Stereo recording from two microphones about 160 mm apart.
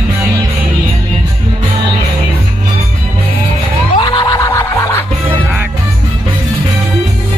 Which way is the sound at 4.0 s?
30° left (ahead or behind).